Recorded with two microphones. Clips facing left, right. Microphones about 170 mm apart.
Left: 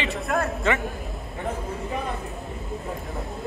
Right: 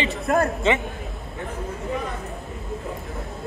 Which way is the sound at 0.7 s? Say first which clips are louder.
Right 1 dB; 20° right (ahead or behind).